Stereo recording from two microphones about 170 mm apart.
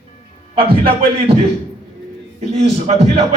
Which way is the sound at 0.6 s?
30° right (ahead or behind).